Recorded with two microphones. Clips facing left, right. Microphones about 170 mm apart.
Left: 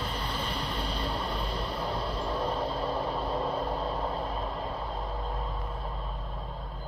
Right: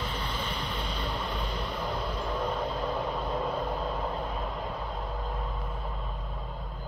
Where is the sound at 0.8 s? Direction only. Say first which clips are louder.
Left 1 dB; 35° left (ahead or behind).